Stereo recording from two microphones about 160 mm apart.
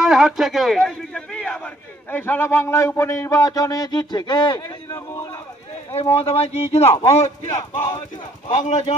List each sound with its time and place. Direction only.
0.0 s a man's voice: centre (ahead or behind); by 5.3 s 20° left (ahead or behind)
5.9 s speech: 40° left (ahead or behind)
8.5 s speech: 45° left (ahead or behind)